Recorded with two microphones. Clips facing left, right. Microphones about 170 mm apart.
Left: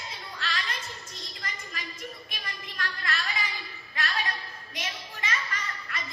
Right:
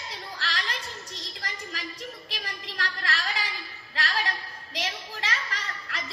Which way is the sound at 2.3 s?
75° right (ahead or behind).